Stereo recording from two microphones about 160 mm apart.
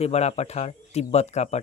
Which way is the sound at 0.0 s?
40° left (ahead or behind).